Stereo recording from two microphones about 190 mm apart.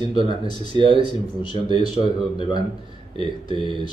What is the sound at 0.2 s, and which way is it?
Speech, 30° right (ahead or behind).